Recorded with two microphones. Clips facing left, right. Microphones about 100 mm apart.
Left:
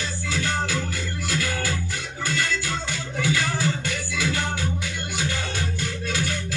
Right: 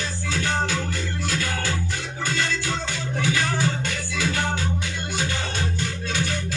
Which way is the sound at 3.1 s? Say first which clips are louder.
Right 1 dB; 25° right (ahead or behind).